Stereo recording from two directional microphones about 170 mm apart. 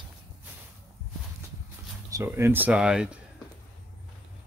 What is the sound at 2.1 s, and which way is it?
Speech, 15° right (ahead or behind).